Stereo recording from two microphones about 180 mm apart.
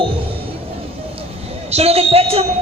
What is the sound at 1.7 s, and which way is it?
Speech, 35° right (ahead or behind).